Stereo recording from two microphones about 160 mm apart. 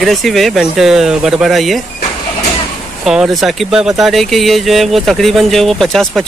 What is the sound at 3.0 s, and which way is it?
Speech, 5° right (ahead or behind).